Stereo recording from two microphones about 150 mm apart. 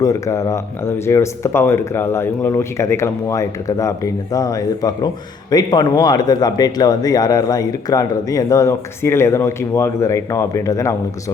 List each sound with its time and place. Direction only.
0.0 s speech: 20° left (ahead or behind)